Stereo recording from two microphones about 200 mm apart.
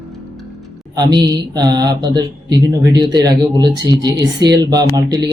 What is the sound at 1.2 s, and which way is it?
Speech, 20° right (ahead or behind).